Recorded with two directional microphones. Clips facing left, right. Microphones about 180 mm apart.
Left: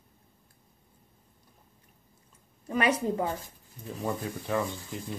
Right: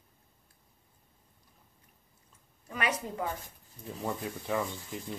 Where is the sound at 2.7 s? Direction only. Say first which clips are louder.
Left 7 dB; 30° left (ahead or behind).